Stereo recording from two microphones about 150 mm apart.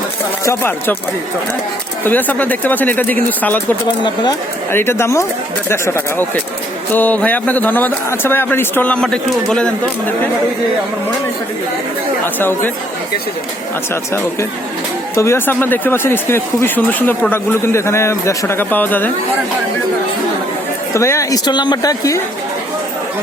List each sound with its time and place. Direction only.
0.4 s speech: 15° left (ahead or behind)
2.0 s speech: 10° left (ahead or behind)
4.0 s speech: 30° left (ahead or behind)
4.7 s speech: 15° left (ahead or behind)
12.2 s speech: 15° left (ahead or behind)
13.9 s speech: 15° left (ahead or behind)
20.9 s speech: 20° left (ahead or behind)